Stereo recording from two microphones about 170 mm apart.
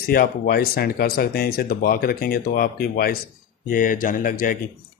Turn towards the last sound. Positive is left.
turn(degrees=55)  # may be behind; listen again after turning